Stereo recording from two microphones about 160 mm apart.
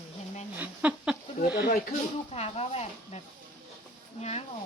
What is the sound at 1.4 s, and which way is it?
Speech, 85° left.